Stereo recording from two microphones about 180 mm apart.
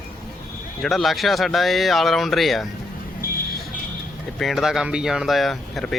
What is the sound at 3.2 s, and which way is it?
Vehicle, 50° left (ahead or behind).